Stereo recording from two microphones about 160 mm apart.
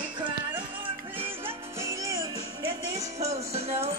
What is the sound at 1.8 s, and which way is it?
Music, 20° right (ahead or behind).